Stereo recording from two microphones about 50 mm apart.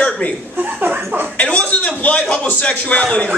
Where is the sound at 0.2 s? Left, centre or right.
Left.